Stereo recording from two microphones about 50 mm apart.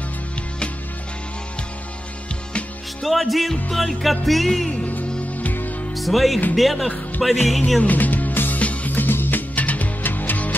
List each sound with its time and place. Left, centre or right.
3.0 s music: centre
5.4 s music: left
5.9 s speech: centre
6.5 s music: centre
7.8 s music: left